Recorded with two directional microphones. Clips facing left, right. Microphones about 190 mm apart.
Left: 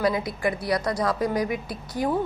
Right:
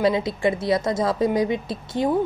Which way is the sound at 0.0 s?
25° right (ahead or behind).